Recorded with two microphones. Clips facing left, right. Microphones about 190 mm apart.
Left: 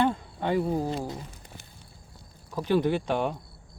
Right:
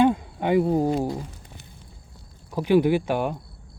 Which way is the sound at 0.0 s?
15° right (ahead or behind).